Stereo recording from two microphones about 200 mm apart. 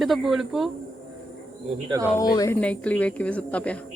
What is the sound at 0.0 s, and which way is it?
Speech, centre (ahead or behind).